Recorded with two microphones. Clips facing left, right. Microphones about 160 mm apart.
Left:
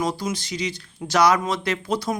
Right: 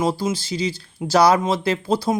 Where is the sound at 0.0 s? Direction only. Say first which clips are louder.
Right 4 dB; 30° right (ahead or behind).